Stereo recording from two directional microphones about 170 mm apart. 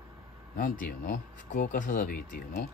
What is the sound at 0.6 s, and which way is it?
Speech, 50° left (ahead or behind).